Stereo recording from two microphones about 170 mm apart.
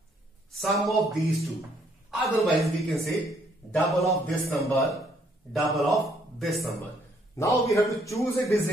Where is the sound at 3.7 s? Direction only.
Centre (ahead or behind).